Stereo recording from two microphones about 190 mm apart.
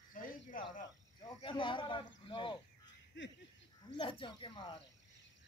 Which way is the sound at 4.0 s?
25° left (ahead or behind).